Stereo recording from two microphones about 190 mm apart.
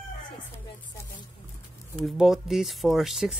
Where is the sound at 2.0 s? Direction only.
Centre (ahead or behind).